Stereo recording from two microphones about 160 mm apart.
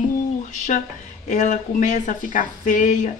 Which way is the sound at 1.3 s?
50° left (ahead or behind).